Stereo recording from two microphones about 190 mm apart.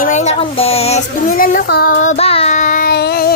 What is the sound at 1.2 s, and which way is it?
Child singing, 50° left (ahead or behind).